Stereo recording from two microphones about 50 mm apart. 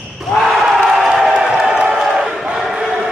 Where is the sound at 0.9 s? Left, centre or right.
Centre.